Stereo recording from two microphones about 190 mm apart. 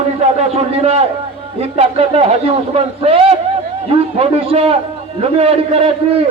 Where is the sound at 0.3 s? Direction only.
35° right (ahead or behind).